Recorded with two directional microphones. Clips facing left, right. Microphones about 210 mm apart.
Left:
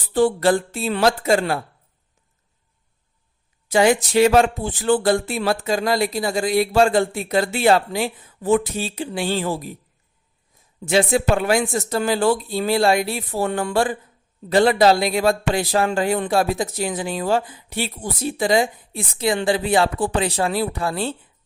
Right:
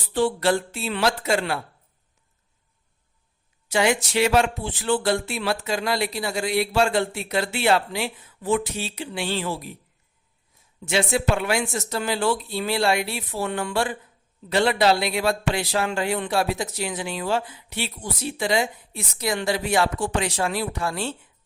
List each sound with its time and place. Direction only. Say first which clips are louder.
0.1 s speech: left 4 dB; 45° left (ahead or behind)
3.7 s speech: left 5 dB; 40° left (ahead or behind)
10.8 s speech: left 5 dB; 45° left (ahead or behind)